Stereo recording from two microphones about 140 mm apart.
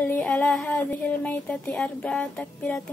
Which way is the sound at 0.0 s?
10° left (ahead or behind).